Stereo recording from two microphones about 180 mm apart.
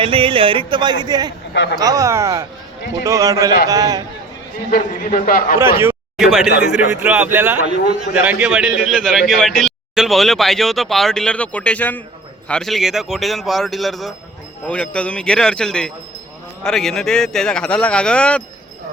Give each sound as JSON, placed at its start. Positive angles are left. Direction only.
{"t": 0.0, "sound": "speech", "side_deg": -30}
{"t": 1.5, "sound": "speech", "side_deg": 70}
{"t": 1.8, "sound": "speech", "side_deg": -20}
{"t": 4.7, "sound": "a man's voice", "side_deg": 50}
{"t": 5.5, "sound": "speech", "side_deg": -15}
{"t": 6.1, "sound": "a man's voice", "side_deg": 0}